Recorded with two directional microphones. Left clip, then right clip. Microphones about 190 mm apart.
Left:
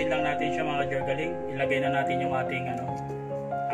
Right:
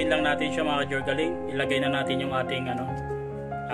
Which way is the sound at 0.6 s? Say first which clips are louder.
Right 1 dB; 60° right (ahead or behind).